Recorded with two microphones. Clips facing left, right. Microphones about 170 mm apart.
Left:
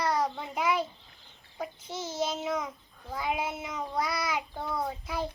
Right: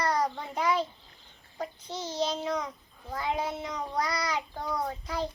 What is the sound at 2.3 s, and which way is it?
A child's voice, 5° left (ahead or behind).